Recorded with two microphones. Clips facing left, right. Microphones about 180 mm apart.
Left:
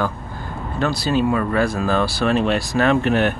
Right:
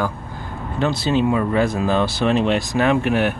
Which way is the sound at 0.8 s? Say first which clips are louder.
Right 1 dB; 20° right (ahead or behind).